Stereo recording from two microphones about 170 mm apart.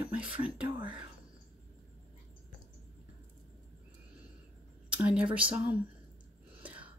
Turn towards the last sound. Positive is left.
turn(degrees=-10)  # may be behind; listen again after turning